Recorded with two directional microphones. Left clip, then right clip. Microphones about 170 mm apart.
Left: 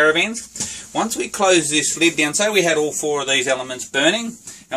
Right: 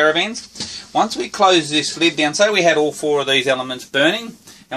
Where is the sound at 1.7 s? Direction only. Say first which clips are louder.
Even; 30° right (ahead or behind).